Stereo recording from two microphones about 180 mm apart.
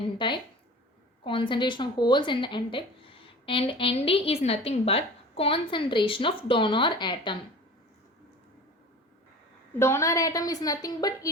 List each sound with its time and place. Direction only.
0.2 s a woman's voice: 25° left (ahead or behind)
9.7 s a woman's voice: 15° left (ahead or behind)